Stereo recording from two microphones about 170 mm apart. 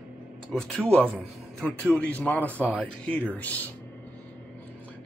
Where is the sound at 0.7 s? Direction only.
5° left (ahead or behind).